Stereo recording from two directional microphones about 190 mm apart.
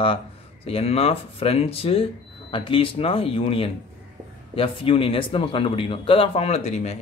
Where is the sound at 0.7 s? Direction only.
30° left (ahead or behind).